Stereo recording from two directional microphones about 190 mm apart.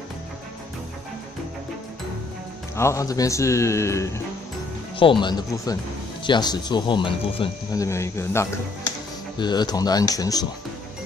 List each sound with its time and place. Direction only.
2.7 s speech: 15° left (ahead or behind)
4.9 s speech: 25° left (ahead or behind)
7.8 s speech: 15° left (ahead or behind)